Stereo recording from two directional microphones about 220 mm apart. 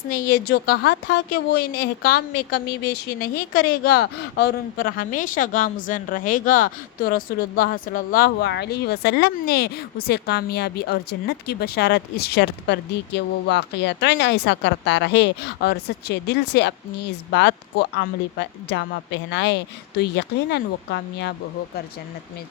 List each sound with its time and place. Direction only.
0.1 s a woman's voice: 45° left (ahead or behind)